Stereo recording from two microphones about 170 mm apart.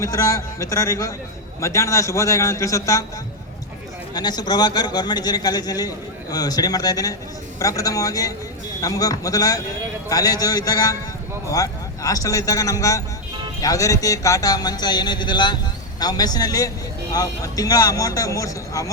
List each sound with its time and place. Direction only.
0.0 s a man's voice: 20° left (ahead or behind)
4.1 s speech: 25° left (ahead or behind)